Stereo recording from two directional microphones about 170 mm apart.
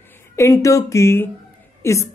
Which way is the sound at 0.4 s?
20° left (ahead or behind).